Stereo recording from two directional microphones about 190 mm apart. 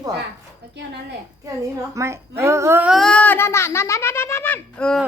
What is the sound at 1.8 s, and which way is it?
A child's voice, 15° right (ahead or behind).